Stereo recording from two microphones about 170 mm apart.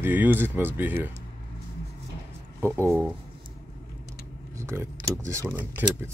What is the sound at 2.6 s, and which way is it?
Speech, 15° right (ahead or behind).